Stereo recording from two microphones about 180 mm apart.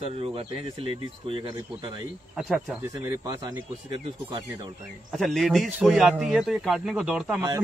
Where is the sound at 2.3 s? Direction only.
Centre (ahead or behind).